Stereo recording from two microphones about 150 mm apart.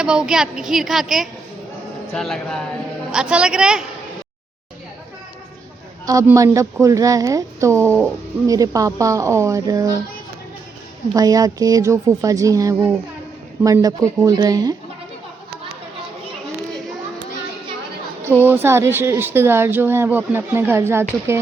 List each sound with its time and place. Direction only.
0.0 s a woman's voice: 5° right (ahead or behind)
6.2 s a woman's voice: 20° right (ahead or behind)
11.1 s a woman's voice: 25° right (ahead or behind)
18.3 s a woman's voice: 15° right (ahead or behind)